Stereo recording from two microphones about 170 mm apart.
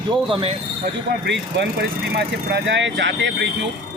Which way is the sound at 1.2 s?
90° right.